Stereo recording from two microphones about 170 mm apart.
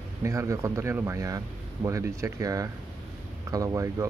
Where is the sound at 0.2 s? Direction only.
20° right (ahead or behind).